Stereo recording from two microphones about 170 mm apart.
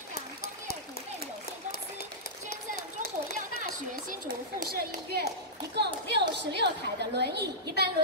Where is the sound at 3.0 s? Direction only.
70° left (ahead or behind).